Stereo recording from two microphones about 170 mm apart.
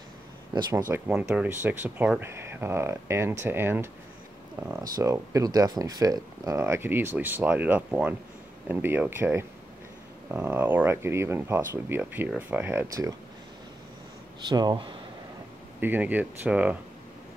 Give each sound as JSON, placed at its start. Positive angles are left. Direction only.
{"t": 0.5, "sound": "speech", "side_deg": -25}
{"t": 0.8, "sound": "speech", "side_deg": -10}
{"t": 14.5, "sound": "speech", "side_deg": -25}
{"t": 15.8, "sound": "speech", "side_deg": -10}